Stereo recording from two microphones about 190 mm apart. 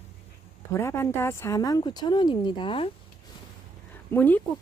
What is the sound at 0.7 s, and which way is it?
Speech, 15° left (ahead or behind).